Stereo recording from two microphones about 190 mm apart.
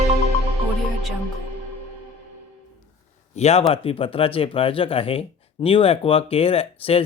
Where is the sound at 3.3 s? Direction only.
35° left (ahead or behind).